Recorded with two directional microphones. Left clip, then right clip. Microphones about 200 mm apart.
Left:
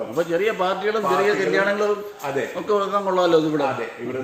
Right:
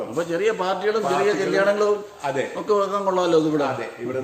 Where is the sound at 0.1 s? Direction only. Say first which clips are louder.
Left 1 dB; 10° right (ahead or behind).